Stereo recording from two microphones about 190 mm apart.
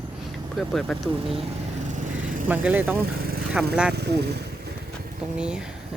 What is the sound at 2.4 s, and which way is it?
Speech, 10° right (ahead or behind).